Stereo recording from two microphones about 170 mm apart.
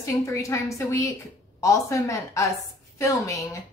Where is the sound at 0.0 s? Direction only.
20° left (ahead or behind).